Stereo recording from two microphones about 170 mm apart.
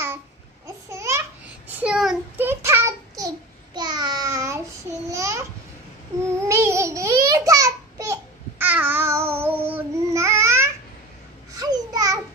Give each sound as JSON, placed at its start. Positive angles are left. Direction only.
{"t": 0.8, "sound": "babbling", "side_deg": -15}
{"t": 1.8, "sound": "child singing", "side_deg": -5}
{"t": 2.4, "sound": "child singing", "side_deg": -15}
{"t": 5.1, "sound": "babbling", "side_deg": -20}
{"t": 6.5, "sound": "a sound", "side_deg": -15}
{"t": 11.5, "sound": "babbling", "side_deg": -20}